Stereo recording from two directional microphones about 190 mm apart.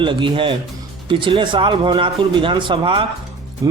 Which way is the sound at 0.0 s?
25° right (ahead or behind).